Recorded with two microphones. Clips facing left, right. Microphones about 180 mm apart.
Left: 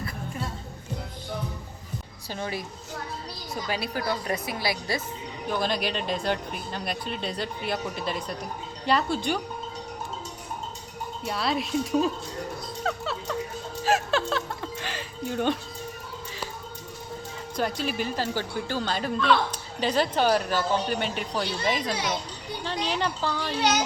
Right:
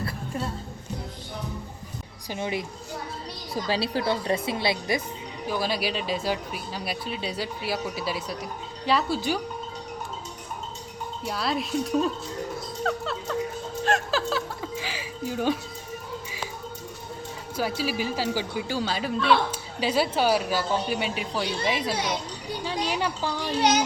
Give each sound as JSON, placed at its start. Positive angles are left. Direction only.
{"t": 2.3, "sound": "a woman's voice", "side_deg": -20}
{"t": 3.5, "sound": "a woman's voice", "side_deg": -30}
{"t": 5.5, "sound": "speech", "side_deg": -5}
{"t": 11.3, "sound": "speech", "side_deg": 0}
{"t": 12.8, "sound": "music", "side_deg": 0}
{"t": 17.6, "sound": "speech", "side_deg": -5}